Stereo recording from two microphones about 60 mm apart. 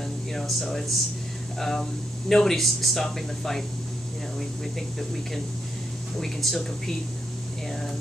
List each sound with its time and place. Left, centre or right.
0.3 s speech: centre